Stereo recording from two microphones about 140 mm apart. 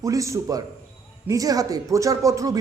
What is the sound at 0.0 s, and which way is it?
A man's voice, 20° right (ahead or behind).